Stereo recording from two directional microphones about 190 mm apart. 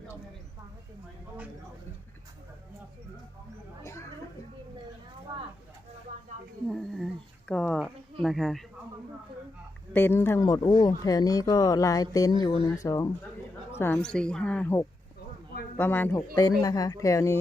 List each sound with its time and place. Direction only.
6.7 s speech: centre (ahead or behind)
9.9 s speech: 10° left (ahead or behind)